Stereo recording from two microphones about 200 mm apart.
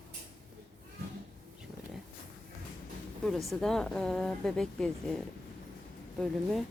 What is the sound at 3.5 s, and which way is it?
Speech, centre (ahead or behind).